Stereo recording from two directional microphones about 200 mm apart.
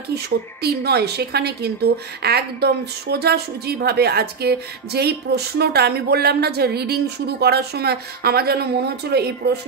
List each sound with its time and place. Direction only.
0.1 s a woman's voice: 55° right (ahead or behind)